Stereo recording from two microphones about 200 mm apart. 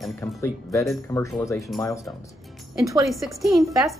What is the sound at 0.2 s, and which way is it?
Speech, 15° left (ahead or behind).